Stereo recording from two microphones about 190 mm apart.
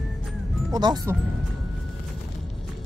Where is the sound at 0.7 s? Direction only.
20° right (ahead or behind).